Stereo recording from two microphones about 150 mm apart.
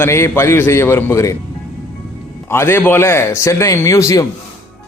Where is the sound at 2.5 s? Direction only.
15° left (ahead or behind).